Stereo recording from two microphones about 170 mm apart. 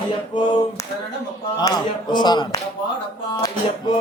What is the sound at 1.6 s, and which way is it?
Speech, 25° left (ahead or behind).